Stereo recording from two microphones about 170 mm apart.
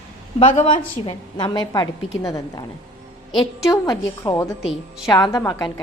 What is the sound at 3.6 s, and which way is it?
Speech, 25° left (ahead or behind).